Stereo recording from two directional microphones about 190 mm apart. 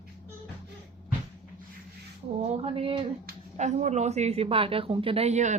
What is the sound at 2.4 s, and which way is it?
Speech, 35° right (ahead or behind).